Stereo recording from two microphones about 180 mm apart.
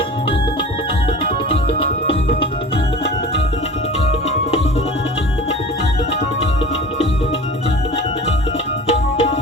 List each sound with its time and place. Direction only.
1.2 s music: 30° left (ahead or behind)
8.9 s tabla: 35° left (ahead or behind)